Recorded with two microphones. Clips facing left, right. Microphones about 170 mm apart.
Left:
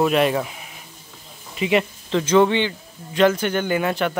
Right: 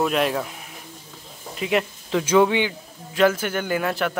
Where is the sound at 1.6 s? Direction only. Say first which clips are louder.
Left 3 dB; centre (ahead or behind).